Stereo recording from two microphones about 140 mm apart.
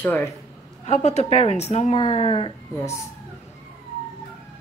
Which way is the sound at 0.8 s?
50° left (ahead or behind).